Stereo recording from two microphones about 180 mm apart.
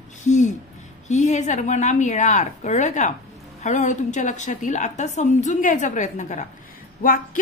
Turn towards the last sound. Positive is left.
turn(degrees=50)  # may be behind; listen again after turning